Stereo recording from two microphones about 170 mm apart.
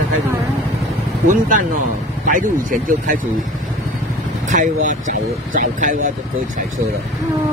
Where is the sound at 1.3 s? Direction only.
50° right (ahead or behind).